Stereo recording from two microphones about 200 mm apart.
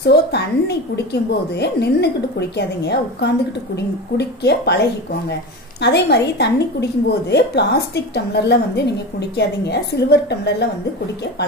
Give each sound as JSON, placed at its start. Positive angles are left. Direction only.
{"t": 0.0, "sound": "a woman's voice", "side_deg": 55}
{"t": 5.8, "sound": "a woman's voice", "side_deg": 55}